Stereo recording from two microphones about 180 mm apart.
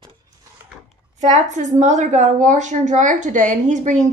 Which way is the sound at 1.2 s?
40° right (ahead or behind).